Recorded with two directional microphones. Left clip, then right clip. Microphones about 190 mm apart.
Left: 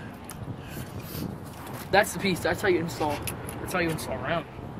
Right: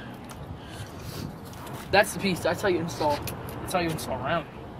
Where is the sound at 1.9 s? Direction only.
10° left (ahead or behind).